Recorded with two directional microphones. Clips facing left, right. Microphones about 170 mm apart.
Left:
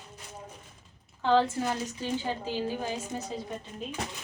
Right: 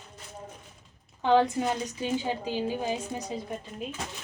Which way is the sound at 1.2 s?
20° right (ahead or behind).